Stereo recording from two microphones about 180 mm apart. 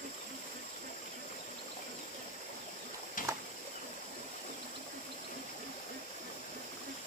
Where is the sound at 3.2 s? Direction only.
50° left (ahead or behind).